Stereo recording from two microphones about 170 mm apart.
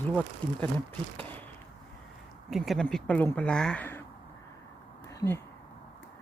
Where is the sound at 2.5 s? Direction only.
Centre (ahead or behind).